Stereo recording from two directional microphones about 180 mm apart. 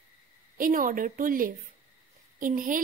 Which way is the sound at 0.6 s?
50° right (ahead or behind).